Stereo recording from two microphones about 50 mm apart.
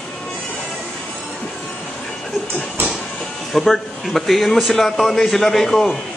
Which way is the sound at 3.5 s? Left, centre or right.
Centre.